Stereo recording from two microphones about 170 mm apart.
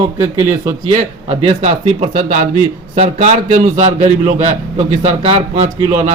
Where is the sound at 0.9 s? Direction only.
35° right (ahead or behind).